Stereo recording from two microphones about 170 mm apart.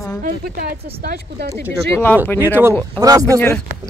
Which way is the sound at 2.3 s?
15° right (ahead or behind).